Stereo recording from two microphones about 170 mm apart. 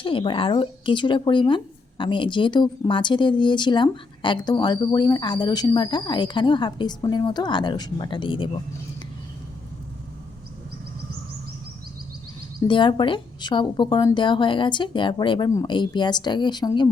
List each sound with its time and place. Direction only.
0.0 s speech: 30° left (ahead or behind)
12.5 s speech: 30° left (ahead or behind)